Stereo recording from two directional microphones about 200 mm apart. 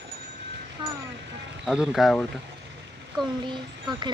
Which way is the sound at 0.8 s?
25° right (ahead or behind).